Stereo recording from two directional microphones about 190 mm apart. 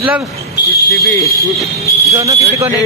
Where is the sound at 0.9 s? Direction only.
15° left (ahead or behind).